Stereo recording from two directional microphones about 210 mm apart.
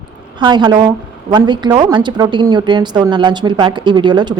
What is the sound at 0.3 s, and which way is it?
A woman's voice, 20° right (ahead or behind).